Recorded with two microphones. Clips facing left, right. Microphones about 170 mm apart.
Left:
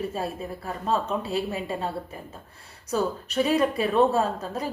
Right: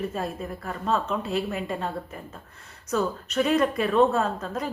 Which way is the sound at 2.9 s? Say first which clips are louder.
Even; 30° left (ahead or behind).